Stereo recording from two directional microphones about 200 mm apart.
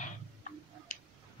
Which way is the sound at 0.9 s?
35° left (ahead or behind).